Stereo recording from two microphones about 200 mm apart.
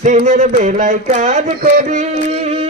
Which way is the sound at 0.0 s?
40° right (ahead or behind).